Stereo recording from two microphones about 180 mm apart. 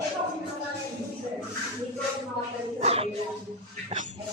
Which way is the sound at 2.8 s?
35° right (ahead or behind).